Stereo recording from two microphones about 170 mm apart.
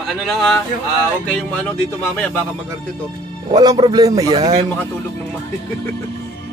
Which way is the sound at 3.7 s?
25° right (ahead or behind).